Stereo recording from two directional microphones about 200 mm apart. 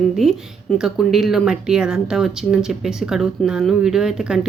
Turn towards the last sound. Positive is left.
turn(degrees=0)  # may be behind; listen again after turning